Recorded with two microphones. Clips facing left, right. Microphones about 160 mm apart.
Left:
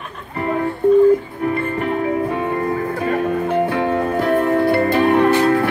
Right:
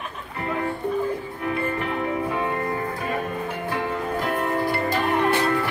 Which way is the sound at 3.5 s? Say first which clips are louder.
Left 10 dB; 65° left (ahead or behind).